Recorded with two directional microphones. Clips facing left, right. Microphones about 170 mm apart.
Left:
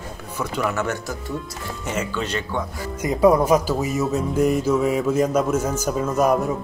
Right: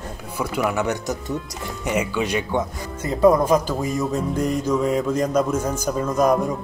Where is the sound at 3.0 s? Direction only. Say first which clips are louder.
Even; 10° left (ahead or behind).